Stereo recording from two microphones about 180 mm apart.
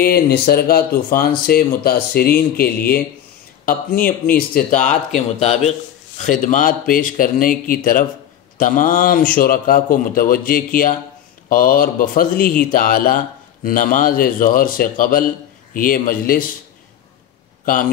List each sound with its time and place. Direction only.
0.0 s speech: 60° left (ahead or behind)